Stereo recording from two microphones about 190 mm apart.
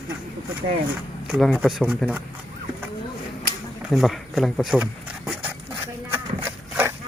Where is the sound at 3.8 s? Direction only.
Centre (ahead or behind).